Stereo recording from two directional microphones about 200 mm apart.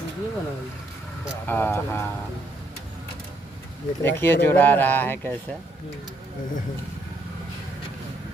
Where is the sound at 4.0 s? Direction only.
10° left (ahead or behind).